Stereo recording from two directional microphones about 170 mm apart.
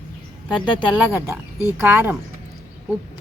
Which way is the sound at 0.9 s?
15° right (ahead or behind).